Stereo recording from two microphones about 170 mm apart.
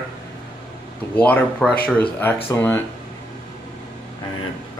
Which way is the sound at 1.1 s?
10° left (ahead or behind).